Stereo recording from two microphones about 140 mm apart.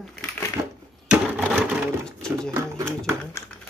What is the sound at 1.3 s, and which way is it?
Sewing machine, 5° right (ahead or behind).